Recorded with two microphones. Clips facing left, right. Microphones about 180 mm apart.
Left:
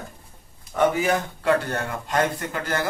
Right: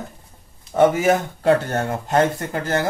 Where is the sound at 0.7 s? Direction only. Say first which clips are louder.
Right 5 dB; 40° right (ahead or behind).